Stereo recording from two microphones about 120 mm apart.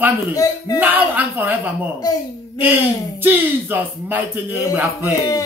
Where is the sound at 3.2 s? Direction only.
15° right (ahead or behind).